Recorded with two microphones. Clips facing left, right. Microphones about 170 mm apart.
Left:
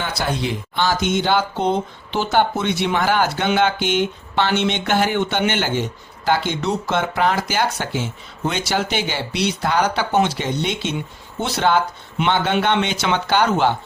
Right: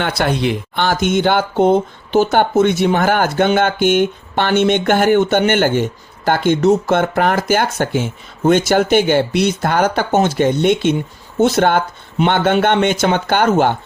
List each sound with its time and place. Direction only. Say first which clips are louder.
0.0 s speech: right 6 dB; 65° right (ahead or behind)